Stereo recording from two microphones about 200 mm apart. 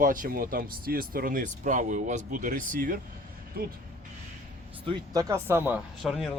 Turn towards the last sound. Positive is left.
turn(degrees=0)  # may be behind; listen again after turning